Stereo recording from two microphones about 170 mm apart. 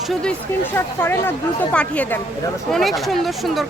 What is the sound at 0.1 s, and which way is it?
Speech, 5° left (ahead or behind).